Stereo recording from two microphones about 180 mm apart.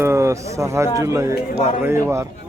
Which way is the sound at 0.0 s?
15° right (ahead or behind).